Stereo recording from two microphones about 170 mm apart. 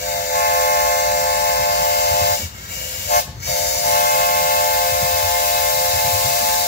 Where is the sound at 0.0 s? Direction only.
70° left (ahead or behind).